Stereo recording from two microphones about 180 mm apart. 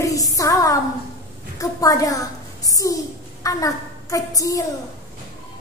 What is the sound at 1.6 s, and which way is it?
A child's voice, 20° left (ahead or behind).